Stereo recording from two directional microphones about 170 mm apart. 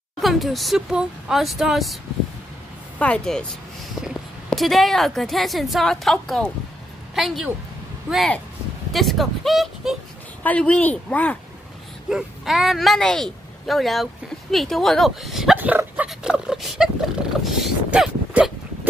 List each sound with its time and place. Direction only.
0.2 s speech: centre (ahead or behind)
3.0 s speech: 5° left (ahead or behind)
12.1 s speech: 5° right (ahead or behind)